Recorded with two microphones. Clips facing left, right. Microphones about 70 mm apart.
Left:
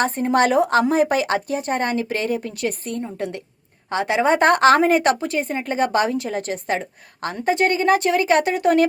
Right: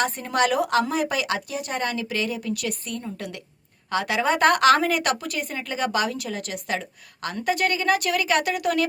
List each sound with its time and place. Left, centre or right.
0.0 s a woman's voice: left